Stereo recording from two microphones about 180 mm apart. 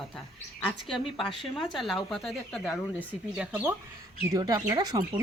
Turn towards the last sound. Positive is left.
turn(degrees=-20)  # may be behind; listen again after turning